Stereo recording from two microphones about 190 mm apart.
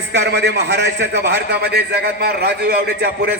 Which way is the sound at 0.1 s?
65° right (ahead or behind).